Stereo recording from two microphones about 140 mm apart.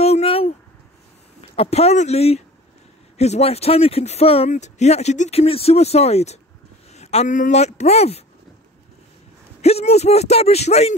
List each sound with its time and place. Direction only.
0.0 s a sound: 45° left (ahead or behind)
1.4 s speech: 45° left (ahead or behind)
9.6 s speech: 50° left (ahead or behind)